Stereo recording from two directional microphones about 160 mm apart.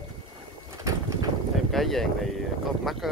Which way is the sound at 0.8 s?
20° right (ahead or behind).